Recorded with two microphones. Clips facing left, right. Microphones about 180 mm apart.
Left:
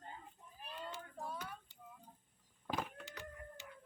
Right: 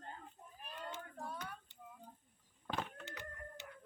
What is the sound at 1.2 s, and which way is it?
Child singing, 5° left (ahead or behind).